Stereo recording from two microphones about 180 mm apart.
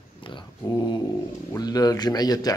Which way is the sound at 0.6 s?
20° left (ahead or behind).